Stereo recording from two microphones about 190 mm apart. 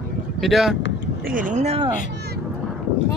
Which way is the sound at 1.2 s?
45° right (ahead or behind).